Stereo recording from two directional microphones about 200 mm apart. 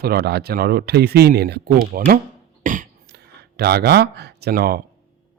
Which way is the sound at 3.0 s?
55° right (ahead or behind).